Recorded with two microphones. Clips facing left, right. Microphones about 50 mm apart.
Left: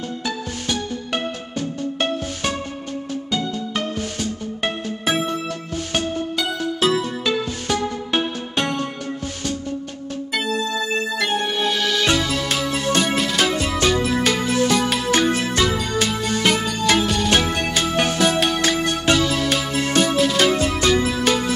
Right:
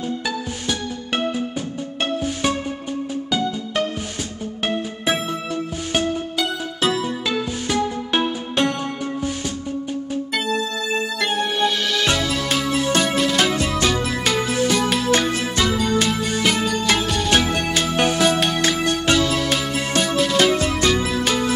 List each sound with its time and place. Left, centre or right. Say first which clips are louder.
5.0 s music: left 3 dB; centre
11.1 s music: right 1 dB; centre
17.9 s music: right 1 dB; centre